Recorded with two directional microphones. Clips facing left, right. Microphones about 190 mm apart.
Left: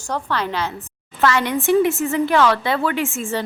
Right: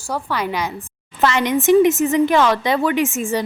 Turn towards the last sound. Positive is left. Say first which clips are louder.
# right 4 dB
turn(degrees=-15)  # may be behind; listen again after turning